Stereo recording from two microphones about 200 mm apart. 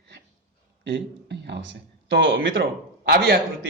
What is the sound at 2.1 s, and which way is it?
Speech, 70° right (ahead or behind).